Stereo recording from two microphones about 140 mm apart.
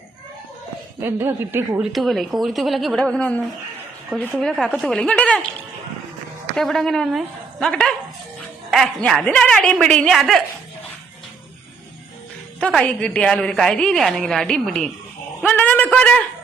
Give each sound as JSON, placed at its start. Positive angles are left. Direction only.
{"t": 1.0, "sound": "speech", "side_deg": -15}
{"t": 1.8, "sound": "a woman's voice", "side_deg": 0}
{"t": 6.6, "sound": "a woman's voice", "side_deg": 0}
{"t": 12.5, "sound": "a woman's voice", "side_deg": 5}